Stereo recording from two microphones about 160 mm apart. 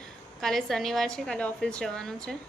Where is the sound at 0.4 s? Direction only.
Centre (ahead or behind).